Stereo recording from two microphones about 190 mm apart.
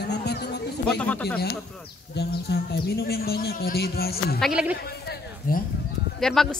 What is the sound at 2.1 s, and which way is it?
Speech, 60° left (ahead or behind).